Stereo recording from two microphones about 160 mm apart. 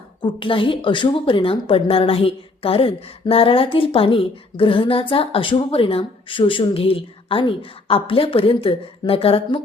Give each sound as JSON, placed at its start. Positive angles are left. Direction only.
{"t": 0.2, "sound": "a woman's voice", "side_deg": 30}